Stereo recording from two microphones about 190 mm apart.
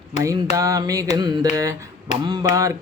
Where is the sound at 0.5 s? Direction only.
20° right (ahead or behind).